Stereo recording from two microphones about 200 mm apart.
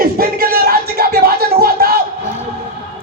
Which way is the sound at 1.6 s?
50° right (ahead or behind).